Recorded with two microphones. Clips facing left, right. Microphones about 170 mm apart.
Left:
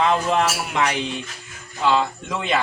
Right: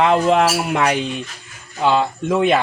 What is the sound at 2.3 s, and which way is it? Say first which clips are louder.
Speech: right 10 dB; 55° right (ahead or behind).